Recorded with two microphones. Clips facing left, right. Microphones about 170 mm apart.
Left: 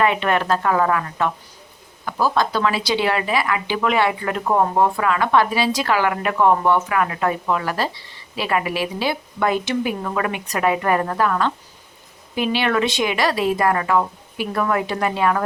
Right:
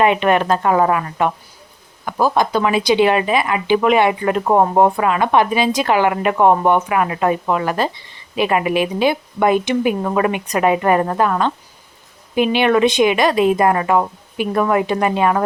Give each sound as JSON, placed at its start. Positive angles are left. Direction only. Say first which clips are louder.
{"t": 0.0, "sound": "speech", "louder": "right 4 dB", "side_deg": -20}